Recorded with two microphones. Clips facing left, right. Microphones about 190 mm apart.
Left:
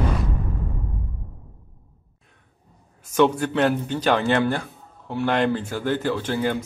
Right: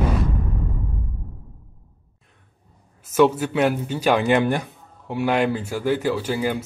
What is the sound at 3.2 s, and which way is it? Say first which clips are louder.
A man's voice: right 1 dB; 5° right (ahead or behind).